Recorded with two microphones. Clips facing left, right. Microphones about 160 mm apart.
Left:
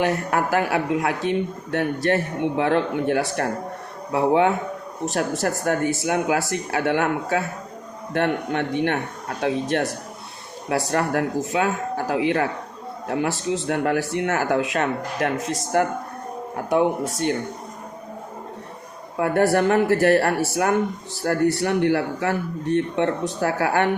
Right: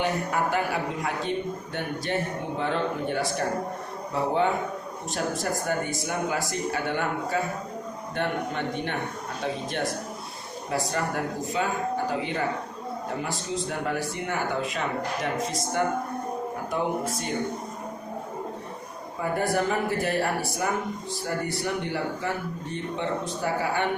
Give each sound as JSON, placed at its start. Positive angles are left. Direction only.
{"t": 0.0, "sound": "speech", "side_deg": 80}
{"t": 15.4, "sound": "speech", "side_deg": 0}
{"t": 16.6, "sound": "speech", "side_deg": 80}
{"t": 19.2, "sound": "speech", "side_deg": 75}